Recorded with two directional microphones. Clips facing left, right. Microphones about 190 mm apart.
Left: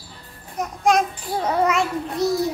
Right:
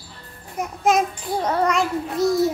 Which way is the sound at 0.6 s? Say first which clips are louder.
Even; 5° right (ahead or behind).